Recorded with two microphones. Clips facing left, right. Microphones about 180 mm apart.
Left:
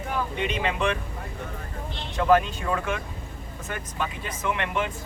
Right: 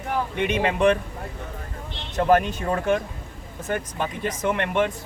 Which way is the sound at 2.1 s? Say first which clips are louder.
Right 2 dB; 45° right (ahead or behind).